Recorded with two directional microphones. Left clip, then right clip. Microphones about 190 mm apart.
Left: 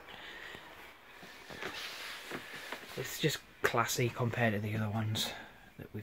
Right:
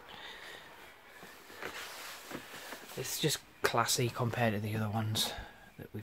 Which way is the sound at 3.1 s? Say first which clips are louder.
Even; 5° right (ahead or behind).